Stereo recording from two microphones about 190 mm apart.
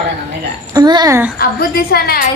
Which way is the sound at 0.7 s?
20° right (ahead or behind).